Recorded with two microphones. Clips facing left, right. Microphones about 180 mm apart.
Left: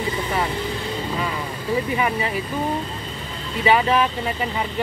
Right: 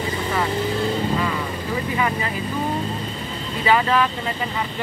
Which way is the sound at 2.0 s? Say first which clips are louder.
Left 1 dB; 15° left (ahead or behind).